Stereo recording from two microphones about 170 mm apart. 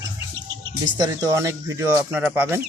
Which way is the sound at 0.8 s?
25° right (ahead or behind).